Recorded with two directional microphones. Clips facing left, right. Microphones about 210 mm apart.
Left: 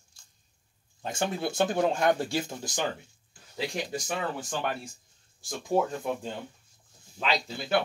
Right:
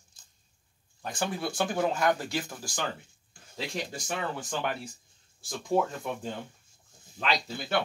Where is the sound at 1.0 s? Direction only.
25° left (ahead or behind).